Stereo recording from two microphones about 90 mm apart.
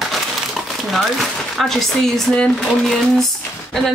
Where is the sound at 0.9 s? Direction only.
Centre (ahead or behind).